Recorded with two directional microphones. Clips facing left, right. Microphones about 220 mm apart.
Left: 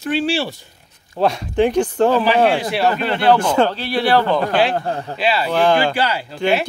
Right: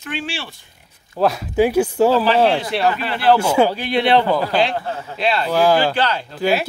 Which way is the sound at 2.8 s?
40° left (ahead or behind).